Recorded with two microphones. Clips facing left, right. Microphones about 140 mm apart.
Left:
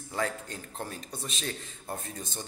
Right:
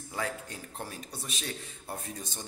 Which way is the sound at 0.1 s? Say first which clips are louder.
Left 3 dB; 10° right (ahead or behind).